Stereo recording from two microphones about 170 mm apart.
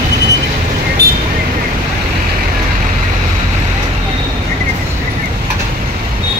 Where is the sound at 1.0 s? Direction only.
70° right (ahead or behind).